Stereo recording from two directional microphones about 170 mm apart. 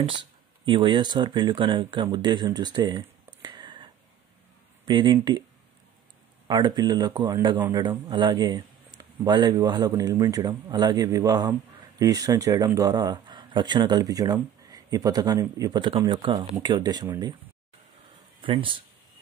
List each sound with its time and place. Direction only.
0.7 s a man's voice: 30° right (ahead or behind)
3.4 s a sound: 25° right (ahead or behind)
4.8 s a man's voice: 25° right (ahead or behind)
6.4 s a man's voice: 25° right (ahead or behind)
18.4 s speech: 30° right (ahead or behind)